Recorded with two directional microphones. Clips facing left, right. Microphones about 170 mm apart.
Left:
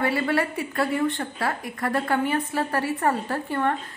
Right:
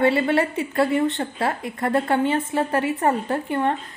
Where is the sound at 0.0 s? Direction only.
25° right (ahead or behind).